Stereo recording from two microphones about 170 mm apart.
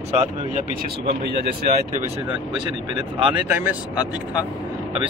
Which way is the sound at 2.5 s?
25° right (ahead or behind).